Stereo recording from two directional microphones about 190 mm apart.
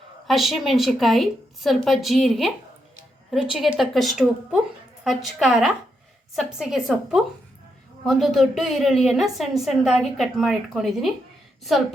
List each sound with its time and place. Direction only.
0.3 s a woman's voice: centre (ahead or behind)
3.5 s a woman's voice: centre (ahead or behind)